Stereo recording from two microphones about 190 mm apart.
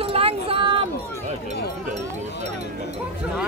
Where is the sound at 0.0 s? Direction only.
30° right (ahead or behind).